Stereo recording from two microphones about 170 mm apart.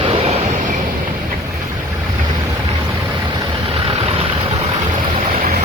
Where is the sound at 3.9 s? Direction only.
35° right (ahead or behind).